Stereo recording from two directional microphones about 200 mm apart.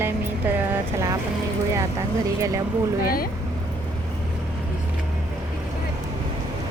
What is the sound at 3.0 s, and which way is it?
Speech, 45° left (ahead or behind).